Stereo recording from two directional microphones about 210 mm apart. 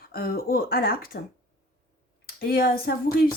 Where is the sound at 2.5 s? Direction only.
45° left (ahead or behind).